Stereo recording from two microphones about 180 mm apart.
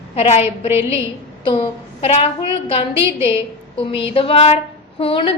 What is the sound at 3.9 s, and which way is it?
A woman's voice, 30° left (ahead or behind).